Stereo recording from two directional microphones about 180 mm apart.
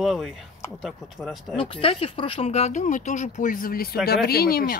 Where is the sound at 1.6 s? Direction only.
30° left (ahead or behind).